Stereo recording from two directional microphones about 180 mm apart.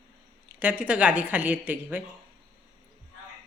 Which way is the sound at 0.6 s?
10° right (ahead or behind).